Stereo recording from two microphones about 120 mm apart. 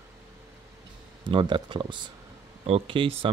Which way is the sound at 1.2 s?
40° right (ahead or behind).